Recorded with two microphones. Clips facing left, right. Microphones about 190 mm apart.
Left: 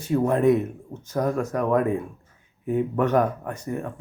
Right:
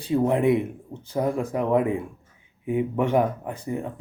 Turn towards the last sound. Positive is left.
turn(degrees=-15)  # may be behind; listen again after turning